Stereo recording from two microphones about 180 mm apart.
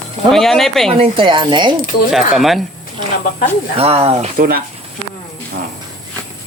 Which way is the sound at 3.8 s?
35° right (ahead or behind).